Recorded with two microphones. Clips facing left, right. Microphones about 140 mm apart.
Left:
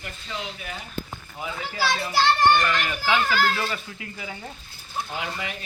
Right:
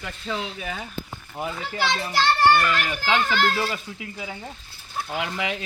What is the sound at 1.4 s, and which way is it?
Speech, 55° right (ahead or behind).